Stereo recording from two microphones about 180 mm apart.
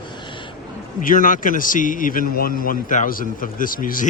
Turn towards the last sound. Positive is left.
turn(degrees=50)  # may be behind; listen again after turning